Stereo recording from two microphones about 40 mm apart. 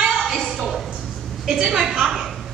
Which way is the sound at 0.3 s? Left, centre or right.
Centre.